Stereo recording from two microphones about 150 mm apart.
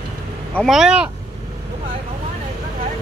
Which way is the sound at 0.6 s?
Centre (ahead or behind).